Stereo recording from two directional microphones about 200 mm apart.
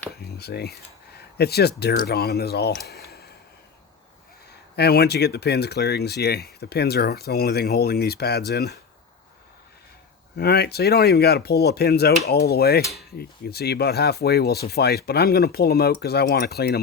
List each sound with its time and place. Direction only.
0.3 s speech: 55° left (ahead or behind)
2.8 s a sound: 55° left (ahead or behind)
4.8 s speech: 55° left (ahead or behind)
10.3 s speech: 55° left (ahead or behind)